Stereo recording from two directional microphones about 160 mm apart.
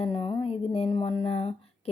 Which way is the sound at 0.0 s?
30° left (ahead or behind).